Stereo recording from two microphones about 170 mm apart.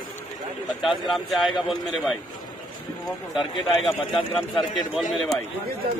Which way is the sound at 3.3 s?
Centre (ahead or behind).